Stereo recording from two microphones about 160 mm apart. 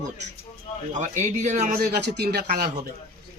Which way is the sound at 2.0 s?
90° right.